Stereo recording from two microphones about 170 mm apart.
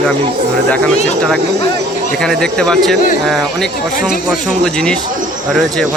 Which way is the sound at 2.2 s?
5° left (ahead or behind).